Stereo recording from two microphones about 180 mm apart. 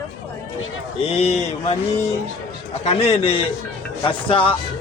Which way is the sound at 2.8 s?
35° left (ahead or behind).